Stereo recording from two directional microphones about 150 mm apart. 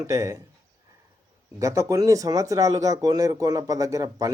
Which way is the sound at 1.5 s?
20° right (ahead or behind).